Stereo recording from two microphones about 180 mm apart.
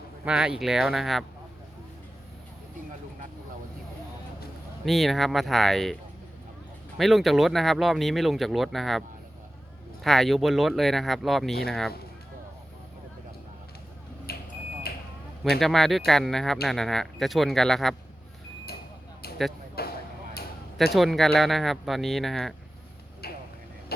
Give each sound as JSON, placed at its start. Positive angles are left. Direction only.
{"t": 0.3, "sound": "speech", "side_deg": -5}
{"t": 4.9, "sound": "speech", "side_deg": 0}
{"t": 14.3, "sound": "smoke detector", "side_deg": 60}
{"t": 14.9, "sound": "a sound", "side_deg": 60}
{"t": 15.5, "sound": "speech", "side_deg": 0}
{"t": 19.8, "sound": "vehicle", "side_deg": 60}
{"t": 20.9, "sound": "speech", "side_deg": 0}
{"t": 23.2, "sound": "vehicle", "side_deg": 60}